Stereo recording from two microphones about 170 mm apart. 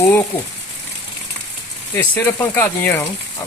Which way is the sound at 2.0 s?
10° left (ahead or behind).